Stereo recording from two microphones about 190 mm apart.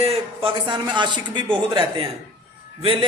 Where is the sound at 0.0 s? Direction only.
30° right (ahead or behind).